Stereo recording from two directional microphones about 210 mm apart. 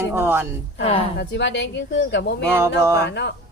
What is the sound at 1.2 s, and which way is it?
Speech, 55° left (ahead or behind).